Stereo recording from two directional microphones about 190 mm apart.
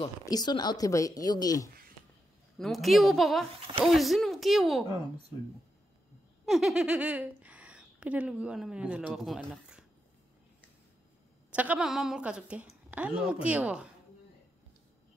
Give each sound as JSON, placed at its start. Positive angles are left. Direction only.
{"t": 0.0, "sound": "speech", "side_deg": 20}
{"t": 2.6, "sound": "speech", "side_deg": 0}
{"t": 6.4, "sound": "speech", "side_deg": 0}
{"t": 11.5, "sound": "a woman's voice", "side_deg": -5}